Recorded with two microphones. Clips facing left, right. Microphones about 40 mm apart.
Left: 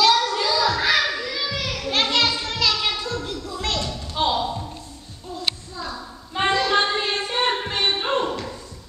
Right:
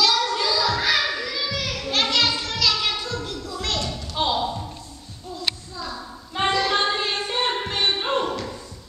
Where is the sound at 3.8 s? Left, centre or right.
Centre.